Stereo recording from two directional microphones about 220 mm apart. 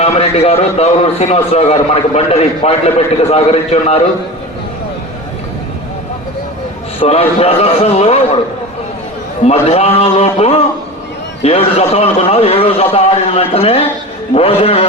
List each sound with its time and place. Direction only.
0.0 s a man's voice: 30° left (ahead or behind)
7.0 s a man's voice: 25° left (ahead or behind)
9.4 s a man's voice: 30° left (ahead or behind)